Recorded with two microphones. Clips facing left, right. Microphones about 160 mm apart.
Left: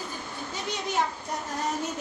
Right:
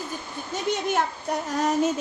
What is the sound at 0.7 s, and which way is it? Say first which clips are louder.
Speech: right 9 dB; 50° right (ahead or behind).